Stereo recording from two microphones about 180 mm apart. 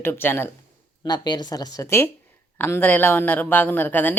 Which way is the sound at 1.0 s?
25° left (ahead or behind).